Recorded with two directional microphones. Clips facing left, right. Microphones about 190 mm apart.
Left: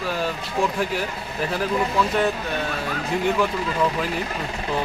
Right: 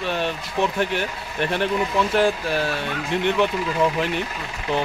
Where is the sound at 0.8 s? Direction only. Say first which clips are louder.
Right 1 dB; centre (ahead or behind).